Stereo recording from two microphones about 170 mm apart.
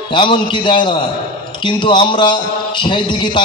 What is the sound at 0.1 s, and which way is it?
A man's voice, 30° left (ahead or behind).